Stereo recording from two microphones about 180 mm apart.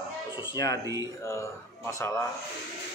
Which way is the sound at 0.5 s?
20° left (ahead or behind).